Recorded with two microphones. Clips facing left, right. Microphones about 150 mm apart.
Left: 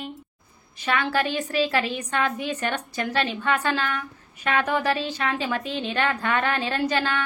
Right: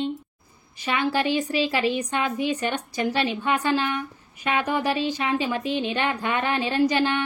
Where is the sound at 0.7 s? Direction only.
10° right (ahead or behind).